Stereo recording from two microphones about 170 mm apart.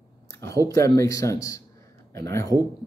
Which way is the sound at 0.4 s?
20° left (ahead or behind).